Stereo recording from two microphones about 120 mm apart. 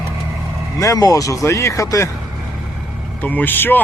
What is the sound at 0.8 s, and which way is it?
Speech, 30° left (ahead or behind).